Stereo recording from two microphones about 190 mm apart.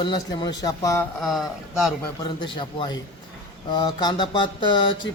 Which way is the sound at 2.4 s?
25° left (ahead or behind).